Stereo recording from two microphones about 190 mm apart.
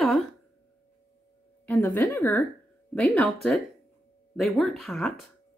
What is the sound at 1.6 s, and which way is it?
A woman's voice, 10° left (ahead or behind).